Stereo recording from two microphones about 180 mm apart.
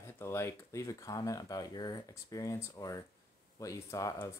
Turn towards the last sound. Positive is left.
turn(degrees=20)  # may be behind; listen again after turning